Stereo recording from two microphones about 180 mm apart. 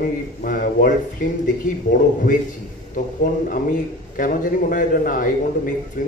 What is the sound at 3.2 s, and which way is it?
Speech, 50° left (ahead or behind).